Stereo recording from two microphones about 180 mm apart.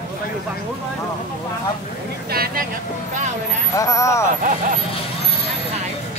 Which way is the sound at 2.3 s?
60° right (ahead or behind).